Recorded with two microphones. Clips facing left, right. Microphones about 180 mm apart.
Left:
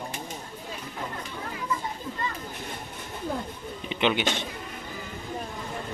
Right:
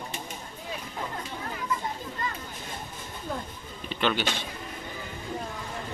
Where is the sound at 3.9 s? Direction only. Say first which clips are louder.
Left 2 dB; 15° left (ahead or behind).